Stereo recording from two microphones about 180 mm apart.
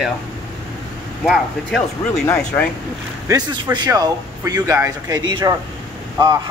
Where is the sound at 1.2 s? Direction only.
Centre (ahead or behind).